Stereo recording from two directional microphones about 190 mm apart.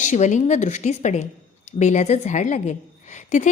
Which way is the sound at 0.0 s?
40° left (ahead or behind).